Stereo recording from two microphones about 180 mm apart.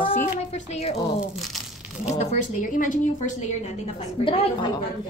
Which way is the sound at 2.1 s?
40° left (ahead or behind).